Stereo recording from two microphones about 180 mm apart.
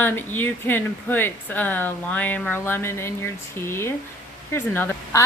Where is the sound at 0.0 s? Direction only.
10° left (ahead or behind).